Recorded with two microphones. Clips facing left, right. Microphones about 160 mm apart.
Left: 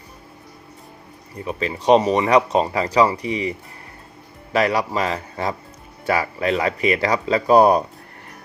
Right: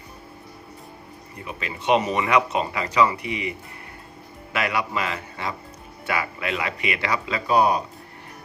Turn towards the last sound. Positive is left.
turn(degrees=45)  # may be behind; listen again after turning